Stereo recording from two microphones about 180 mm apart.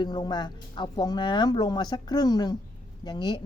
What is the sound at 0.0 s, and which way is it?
Speech, 25° left (ahead or behind).